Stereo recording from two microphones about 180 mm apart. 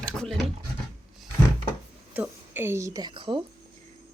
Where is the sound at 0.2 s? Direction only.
Centre (ahead or behind).